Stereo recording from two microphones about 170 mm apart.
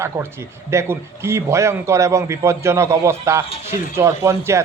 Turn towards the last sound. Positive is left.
turn(degrees=-15)  # may be behind; listen again after turning